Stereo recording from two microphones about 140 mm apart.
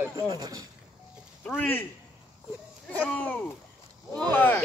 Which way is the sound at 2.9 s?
10° left (ahead or behind).